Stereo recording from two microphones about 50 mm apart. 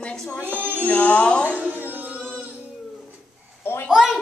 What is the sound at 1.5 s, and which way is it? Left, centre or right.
Music, right.